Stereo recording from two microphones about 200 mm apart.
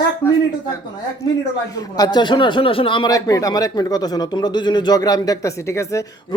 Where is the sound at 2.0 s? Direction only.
20° left (ahead or behind).